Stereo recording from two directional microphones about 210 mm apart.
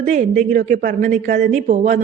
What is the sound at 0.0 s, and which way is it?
Speech, 35° right (ahead or behind).